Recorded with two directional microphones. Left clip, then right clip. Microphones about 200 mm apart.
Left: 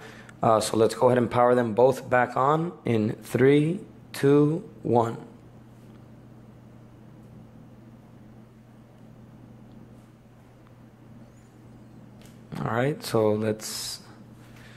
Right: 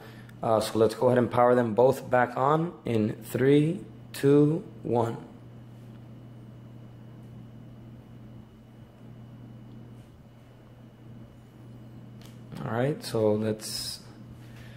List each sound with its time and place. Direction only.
0.1 s speech: 20° left (ahead or behind)
12.4 s speech: 20° left (ahead or behind)